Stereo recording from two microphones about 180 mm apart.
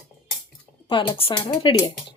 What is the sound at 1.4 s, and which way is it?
Music, 25° left (ahead or behind).